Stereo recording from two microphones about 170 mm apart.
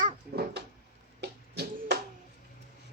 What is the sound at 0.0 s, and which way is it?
Cat, 65° right (ahead or behind).